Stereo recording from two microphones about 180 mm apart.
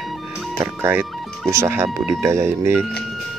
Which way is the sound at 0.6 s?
15° right (ahead or behind).